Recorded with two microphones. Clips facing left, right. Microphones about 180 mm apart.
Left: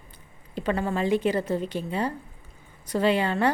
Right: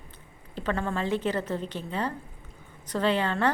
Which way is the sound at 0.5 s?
15° left (ahead or behind).